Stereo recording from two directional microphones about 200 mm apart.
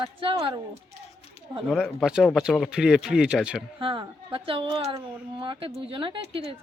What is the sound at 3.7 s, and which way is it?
Speech, 25° right (ahead or behind).